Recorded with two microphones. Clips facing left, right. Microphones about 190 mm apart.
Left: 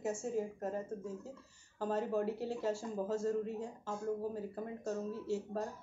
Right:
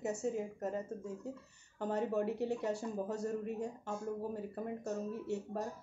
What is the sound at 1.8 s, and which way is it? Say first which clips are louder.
A woman's voice: even; 20° right (ahead or behind).